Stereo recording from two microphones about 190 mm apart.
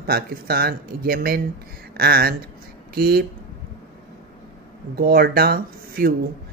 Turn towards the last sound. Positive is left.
turn(degrees=-55)  # may be behind; listen again after turning